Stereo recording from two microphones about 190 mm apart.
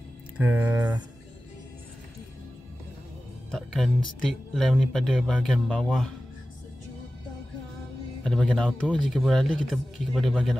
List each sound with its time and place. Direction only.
0.4 s speech: 10° right (ahead or behind)
3.5 s speech: 5° left (ahead or behind)
8.2 s speech: 5° left (ahead or behind)